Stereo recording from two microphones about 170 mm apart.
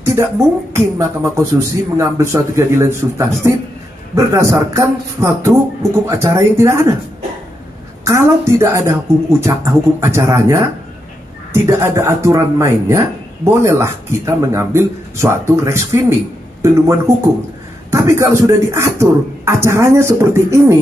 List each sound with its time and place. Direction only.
0.0 s music: 15° right (ahead or behind)
0.7 s a man's voice: 15° right (ahead or behind)
8.0 s a man's voice: 15° right (ahead or behind)